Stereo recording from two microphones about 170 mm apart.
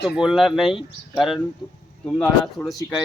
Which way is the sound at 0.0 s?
Centre (ahead or behind).